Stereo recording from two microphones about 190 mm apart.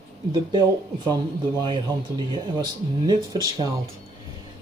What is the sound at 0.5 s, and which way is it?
Speech, 20° right (ahead or behind).